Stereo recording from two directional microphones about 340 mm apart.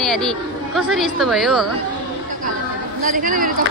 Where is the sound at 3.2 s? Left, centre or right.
Right.